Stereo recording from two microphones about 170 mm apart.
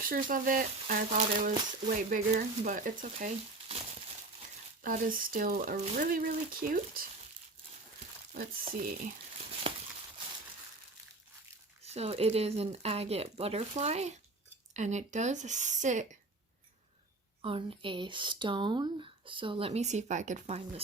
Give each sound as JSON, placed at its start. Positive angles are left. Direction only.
{"t": 0.0, "sound": "speech", "side_deg": -55}
{"t": 4.8, "sound": "speech", "side_deg": -55}
{"t": 5.7, "sound": "speech", "side_deg": -45}
{"t": 8.3, "sound": "speech", "side_deg": -55}
{"t": 11.9, "sound": "speech", "side_deg": -35}
{"t": 17.4, "sound": "speech", "side_deg": -35}